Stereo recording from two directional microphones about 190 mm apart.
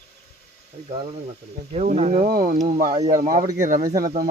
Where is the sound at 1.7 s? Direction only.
35° right (ahead or behind).